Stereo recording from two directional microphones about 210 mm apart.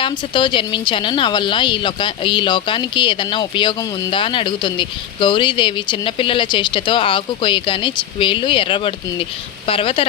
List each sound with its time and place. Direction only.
0.0 s a woman's voice: 25° left (ahead or behind)